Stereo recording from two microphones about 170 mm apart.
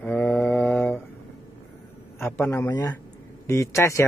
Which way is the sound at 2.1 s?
15° left (ahead or behind).